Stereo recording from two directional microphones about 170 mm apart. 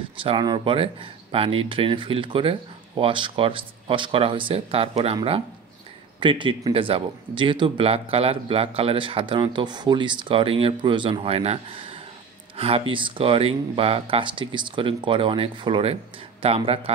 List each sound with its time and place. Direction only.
0.2 s speech: 30° right (ahead or behind)